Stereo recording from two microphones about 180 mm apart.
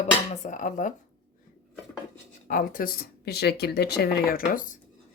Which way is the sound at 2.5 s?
50° left (ahead or behind).